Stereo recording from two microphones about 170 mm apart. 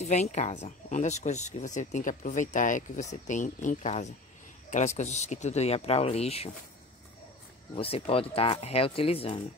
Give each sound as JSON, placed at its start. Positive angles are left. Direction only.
{"t": 0.0, "sound": "speech", "side_deg": 40}
{"t": 7.7, "sound": "speech", "side_deg": 35}